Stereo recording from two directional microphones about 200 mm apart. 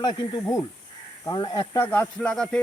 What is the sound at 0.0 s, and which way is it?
Speech, 25° left (ahead or behind).